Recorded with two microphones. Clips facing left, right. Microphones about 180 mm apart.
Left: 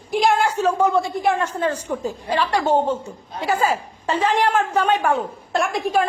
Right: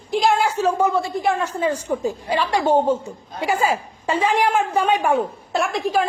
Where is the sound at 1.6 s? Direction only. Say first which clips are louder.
Right 1 dB; 10° right (ahead or behind).